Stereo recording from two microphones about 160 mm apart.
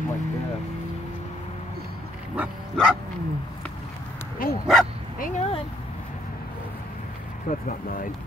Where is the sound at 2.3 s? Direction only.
5° right (ahead or behind).